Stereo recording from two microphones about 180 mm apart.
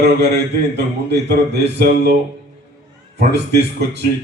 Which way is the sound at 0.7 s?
70° right (ahead or behind).